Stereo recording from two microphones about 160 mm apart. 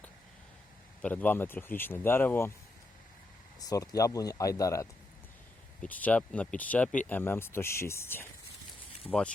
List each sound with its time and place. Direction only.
1.0 s speech: 10° left (ahead or behind)
3.6 s speech: 20° left (ahead or behind)
5.8 s speech: 10° left (ahead or behind)